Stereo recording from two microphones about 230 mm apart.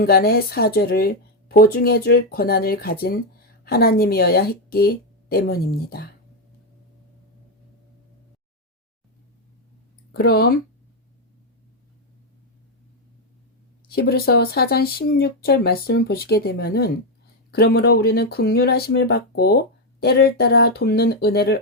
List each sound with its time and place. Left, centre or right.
0.0 s speech: left
10.1 s speech: left
13.9 s speech: left